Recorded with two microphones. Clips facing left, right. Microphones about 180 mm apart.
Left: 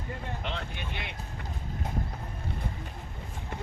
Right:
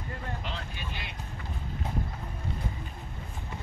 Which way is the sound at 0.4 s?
60° left (ahead or behind).